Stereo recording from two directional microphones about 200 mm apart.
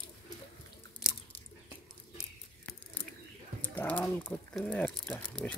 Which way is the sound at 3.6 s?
5° left (ahead or behind).